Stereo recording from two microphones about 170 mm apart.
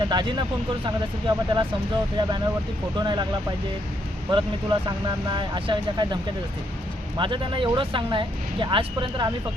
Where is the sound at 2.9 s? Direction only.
25° right (ahead or behind).